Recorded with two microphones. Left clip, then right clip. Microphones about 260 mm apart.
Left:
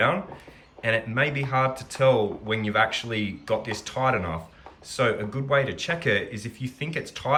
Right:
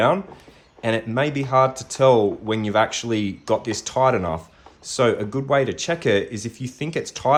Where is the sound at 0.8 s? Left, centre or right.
Centre.